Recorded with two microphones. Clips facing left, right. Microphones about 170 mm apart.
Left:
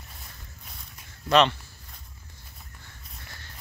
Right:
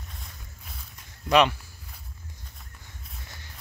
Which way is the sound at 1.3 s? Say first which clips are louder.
Even; 10° right (ahead or behind).